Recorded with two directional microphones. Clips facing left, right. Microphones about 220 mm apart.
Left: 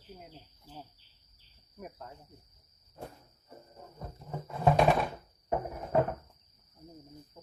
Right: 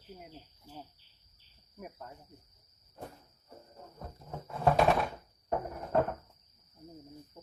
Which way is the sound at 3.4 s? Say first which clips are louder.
Left 1 dB; 5° left (ahead or behind).